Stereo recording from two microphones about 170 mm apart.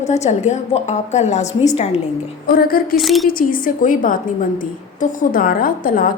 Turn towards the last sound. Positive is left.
turn(degrees=55)  # may be behind; listen again after turning